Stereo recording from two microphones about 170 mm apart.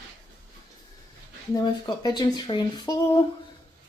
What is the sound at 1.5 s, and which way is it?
Speech, 25° left (ahead or behind).